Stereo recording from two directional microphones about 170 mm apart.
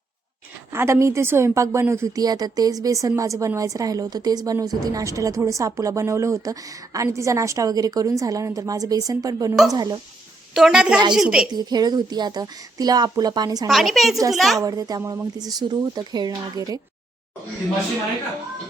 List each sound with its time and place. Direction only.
0.7 s a woman's voice: 15° right (ahead or behind)
10.5 s a woman's voice: centre (ahead or behind)
11.5 s a woman's voice: 25° right (ahead or behind)
13.7 s a woman's voice: centre (ahead or behind)
14.6 s a woman's voice: 20° right (ahead or behind)